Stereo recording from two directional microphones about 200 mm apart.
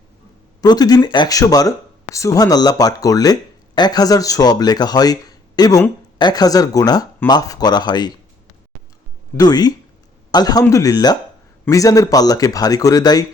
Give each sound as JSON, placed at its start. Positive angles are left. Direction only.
{"t": 0.6, "sound": "speech", "side_deg": 20}
{"t": 9.4, "sound": "speech", "side_deg": 20}